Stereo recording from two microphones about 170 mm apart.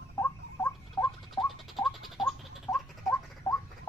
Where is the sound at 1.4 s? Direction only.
Centre (ahead or behind).